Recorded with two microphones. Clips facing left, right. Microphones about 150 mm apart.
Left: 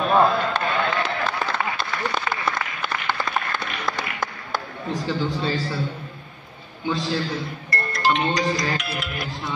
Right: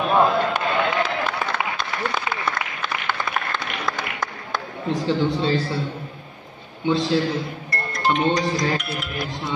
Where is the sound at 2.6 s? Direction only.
10° right (ahead or behind).